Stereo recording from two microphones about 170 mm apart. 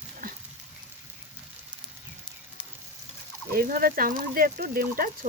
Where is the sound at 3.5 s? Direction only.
60° right (ahead or behind).